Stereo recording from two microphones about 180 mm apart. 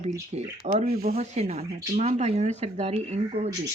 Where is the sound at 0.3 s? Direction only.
35° right (ahead or behind).